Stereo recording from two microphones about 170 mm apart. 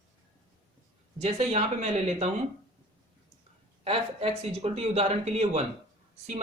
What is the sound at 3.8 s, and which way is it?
Speech, 35° right (ahead or behind).